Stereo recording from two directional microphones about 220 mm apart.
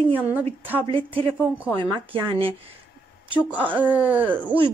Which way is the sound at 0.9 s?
25° right (ahead or behind).